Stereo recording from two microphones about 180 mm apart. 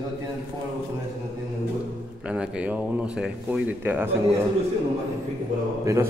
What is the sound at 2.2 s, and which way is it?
Speech, 5° right (ahead or behind).